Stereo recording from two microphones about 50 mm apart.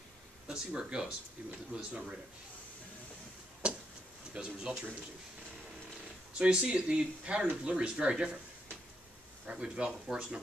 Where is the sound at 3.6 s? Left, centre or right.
Centre.